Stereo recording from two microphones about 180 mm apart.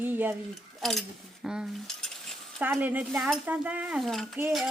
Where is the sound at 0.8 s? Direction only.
Centre (ahead or behind).